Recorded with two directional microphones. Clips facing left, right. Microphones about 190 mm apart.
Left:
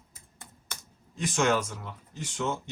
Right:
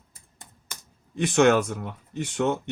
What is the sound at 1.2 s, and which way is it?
Speech, 65° right (ahead or behind).